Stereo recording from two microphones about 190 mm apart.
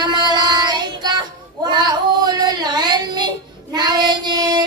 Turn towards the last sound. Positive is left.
turn(degrees=-20)  # may be behind; listen again after turning